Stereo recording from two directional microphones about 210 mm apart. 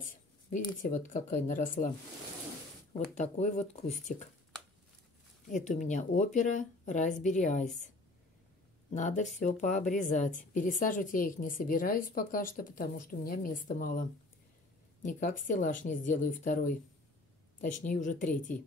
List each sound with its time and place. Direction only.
0.0 s a woman's voice: 40° left (ahead or behind)
3.2 s a woman's voice: 35° left (ahead or behind)
5.5 s a woman's voice: 35° left (ahead or behind)
8.9 s a woman's voice: 35° left (ahead or behind)
15.0 s a woman's voice: 40° left (ahead or behind)